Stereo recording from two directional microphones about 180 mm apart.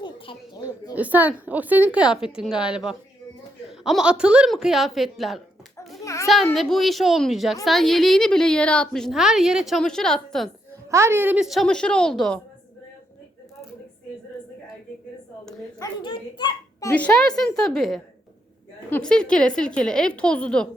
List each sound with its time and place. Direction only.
0.0 s a sound: 25° left (ahead or behind)
0.9 s a woman's voice: 10° right (ahead or behind)
10.9 s a woman's voice: 15° right (ahead or behind); by 12.4 s 5° left (ahead or behind)
15.8 s a child's voice: 25° left (ahead or behind)
16.9 s a woman's voice: 5° left (ahead or behind)